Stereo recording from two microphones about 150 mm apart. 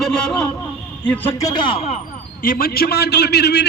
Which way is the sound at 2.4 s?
75° left (ahead or behind).